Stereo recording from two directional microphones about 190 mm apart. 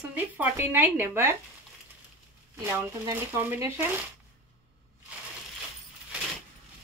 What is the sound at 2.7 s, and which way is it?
Speech, 15° right (ahead or behind).